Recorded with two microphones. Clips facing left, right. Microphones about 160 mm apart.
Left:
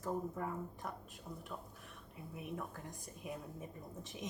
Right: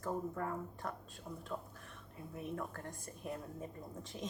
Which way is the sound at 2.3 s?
10° left (ahead or behind).